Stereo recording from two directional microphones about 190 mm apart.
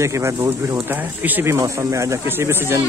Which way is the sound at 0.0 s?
15° right (ahead or behind).